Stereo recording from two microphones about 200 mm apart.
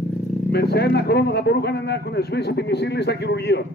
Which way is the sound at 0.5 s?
55° left (ahead or behind).